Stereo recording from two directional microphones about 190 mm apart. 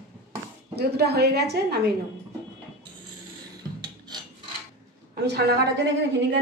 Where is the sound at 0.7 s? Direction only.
60° right (ahead or behind).